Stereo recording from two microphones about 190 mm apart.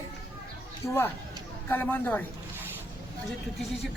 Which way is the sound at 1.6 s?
10° left (ahead or behind).